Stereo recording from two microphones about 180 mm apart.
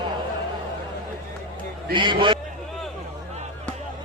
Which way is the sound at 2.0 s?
25° right (ahead or behind).